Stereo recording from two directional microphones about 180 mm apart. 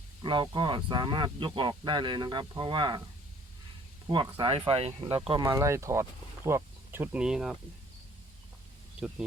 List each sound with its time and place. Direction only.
0.2 s speech: 25° right (ahead or behind)
4.0 s speech: 25° right (ahead or behind)
5.5 s speech: 15° right (ahead or behind)
9.0 s speech: 5° right (ahead or behind)